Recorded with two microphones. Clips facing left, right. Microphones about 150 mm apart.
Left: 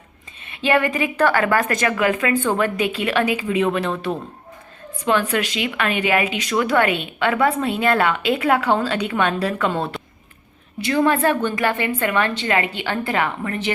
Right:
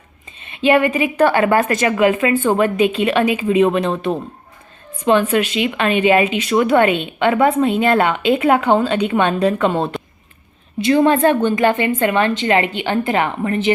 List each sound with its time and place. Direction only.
0.4 s speech: 20° right (ahead or behind)